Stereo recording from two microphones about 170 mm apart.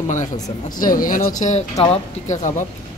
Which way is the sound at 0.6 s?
55° left (ahead or behind).